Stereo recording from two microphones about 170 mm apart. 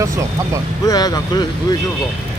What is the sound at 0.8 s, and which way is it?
Speech, 20° left (ahead or behind).